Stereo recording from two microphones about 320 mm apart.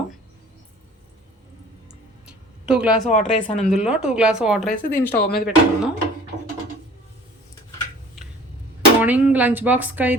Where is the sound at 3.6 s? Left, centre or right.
Centre.